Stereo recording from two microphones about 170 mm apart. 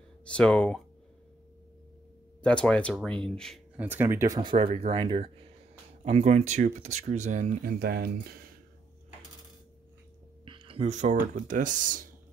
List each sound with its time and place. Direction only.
0.2 s speech: 5° left (ahead or behind)
2.4 s speech: 5° left (ahead or behind)
3.7 s speech: 10° right (ahead or behind); by 8.5 s 65° right (ahead or behind)
10.4 s speech: 30° right (ahead or behind); by 12.0 s 50° right (ahead or behind)